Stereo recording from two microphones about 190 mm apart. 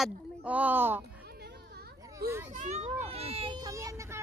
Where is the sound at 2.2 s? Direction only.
55° right (ahead or behind).